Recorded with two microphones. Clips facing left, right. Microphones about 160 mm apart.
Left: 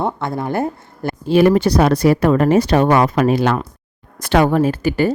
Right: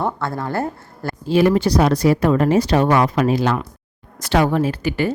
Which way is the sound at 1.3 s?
60° left (ahead or behind).